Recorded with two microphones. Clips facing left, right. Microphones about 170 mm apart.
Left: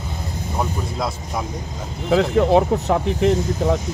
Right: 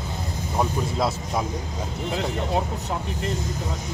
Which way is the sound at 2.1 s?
80° left.